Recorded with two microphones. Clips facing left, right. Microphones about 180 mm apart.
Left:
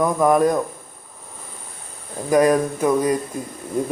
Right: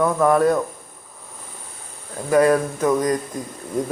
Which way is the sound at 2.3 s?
15° left (ahead or behind).